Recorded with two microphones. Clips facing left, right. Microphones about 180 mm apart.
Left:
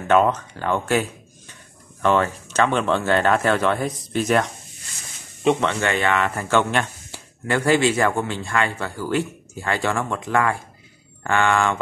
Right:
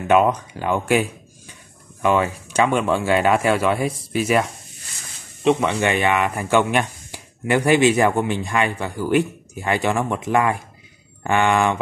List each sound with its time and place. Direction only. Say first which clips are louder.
0.1 s speech: right 1 dB; 15° right (ahead or behind)
5.7 s speech: right 2 dB; 15° right (ahead or behind)